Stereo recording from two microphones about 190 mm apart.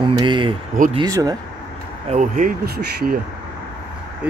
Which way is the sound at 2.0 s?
40° right (ahead or behind).